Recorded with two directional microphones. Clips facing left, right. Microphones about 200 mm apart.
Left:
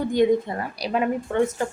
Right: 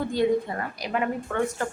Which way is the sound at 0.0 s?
15° left (ahead or behind).